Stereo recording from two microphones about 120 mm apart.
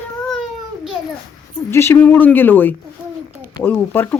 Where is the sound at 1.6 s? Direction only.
20° left (ahead or behind).